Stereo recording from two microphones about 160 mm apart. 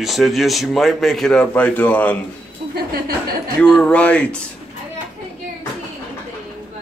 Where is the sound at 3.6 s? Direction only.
10° left (ahead or behind).